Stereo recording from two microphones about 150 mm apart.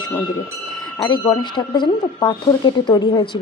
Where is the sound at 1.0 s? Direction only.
20° left (ahead or behind).